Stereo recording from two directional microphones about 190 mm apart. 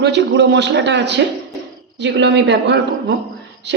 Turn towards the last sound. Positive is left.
turn(degrees=-65)  # may be behind; listen again after turning